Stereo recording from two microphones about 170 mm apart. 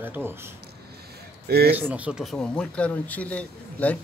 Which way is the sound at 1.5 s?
70° right (ahead or behind).